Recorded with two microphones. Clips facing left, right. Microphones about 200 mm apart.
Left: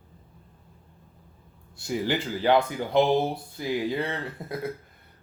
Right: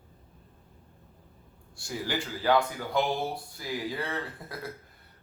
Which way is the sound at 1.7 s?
20° left (ahead or behind).